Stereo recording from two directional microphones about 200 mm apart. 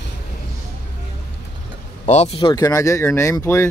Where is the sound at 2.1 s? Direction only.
35° left (ahead or behind); by 3.6 s 15° left (ahead or behind).